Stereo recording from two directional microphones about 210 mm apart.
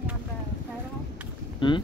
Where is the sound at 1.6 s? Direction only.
20° left (ahead or behind).